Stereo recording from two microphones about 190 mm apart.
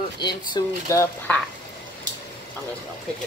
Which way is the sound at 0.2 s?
25° left (ahead or behind).